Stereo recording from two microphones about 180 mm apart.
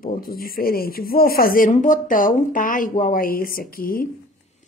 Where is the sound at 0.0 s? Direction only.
55° left (ahead or behind).